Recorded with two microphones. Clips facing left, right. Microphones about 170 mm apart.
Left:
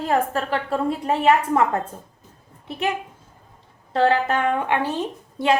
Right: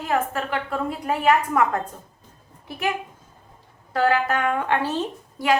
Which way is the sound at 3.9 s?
30° left (ahead or behind).